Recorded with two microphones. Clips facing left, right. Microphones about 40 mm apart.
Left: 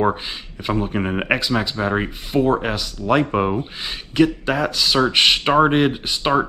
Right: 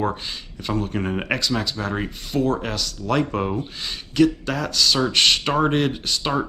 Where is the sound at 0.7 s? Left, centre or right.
Centre.